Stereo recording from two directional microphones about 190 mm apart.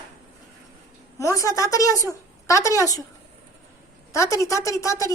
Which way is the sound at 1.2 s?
15° left (ahead or behind).